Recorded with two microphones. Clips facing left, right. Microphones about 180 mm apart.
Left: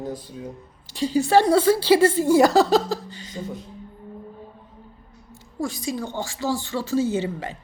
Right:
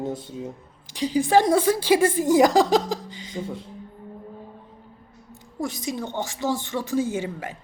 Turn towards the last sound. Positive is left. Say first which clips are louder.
# left 3 dB
turn(degrees=-10)  # may be behind; listen again after turning